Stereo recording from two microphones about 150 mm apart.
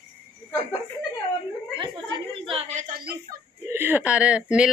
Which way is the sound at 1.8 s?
35° right (ahead or behind).